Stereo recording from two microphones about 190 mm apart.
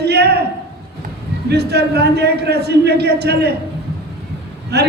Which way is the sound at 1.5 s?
60° right (ahead or behind).